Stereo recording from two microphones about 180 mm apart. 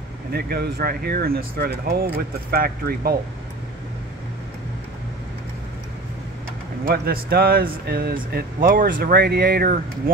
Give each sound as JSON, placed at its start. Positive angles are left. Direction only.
{"t": 0.3, "sound": "speech", "side_deg": -60}
{"t": 6.9, "sound": "speech", "side_deg": -60}